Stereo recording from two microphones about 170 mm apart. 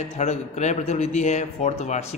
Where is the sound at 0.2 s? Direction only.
40° left (ahead or behind).